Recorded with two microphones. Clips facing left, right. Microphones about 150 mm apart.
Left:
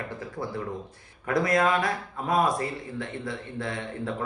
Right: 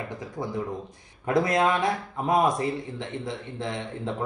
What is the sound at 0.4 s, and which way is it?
Speech, 20° right (ahead or behind).